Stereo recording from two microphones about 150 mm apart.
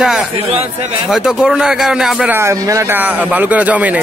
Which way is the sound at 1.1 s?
5° right (ahead or behind).